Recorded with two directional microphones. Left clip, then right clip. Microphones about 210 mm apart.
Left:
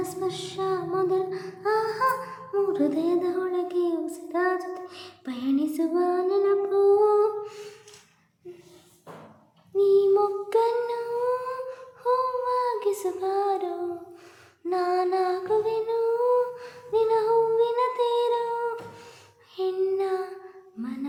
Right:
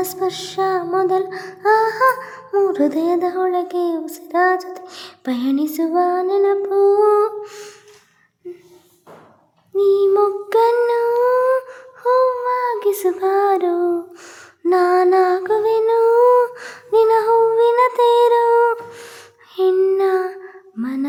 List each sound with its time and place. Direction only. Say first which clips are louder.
0.0 s child singing: right 8 dB; 40° right (ahead or behind)
9.7 s child singing: right 6 dB; 40° right (ahead or behind)
14.6 s music: right 11 dB; 45° right (ahead or behind)